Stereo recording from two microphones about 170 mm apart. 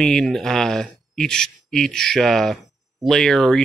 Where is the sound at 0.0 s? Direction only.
5° left (ahead or behind).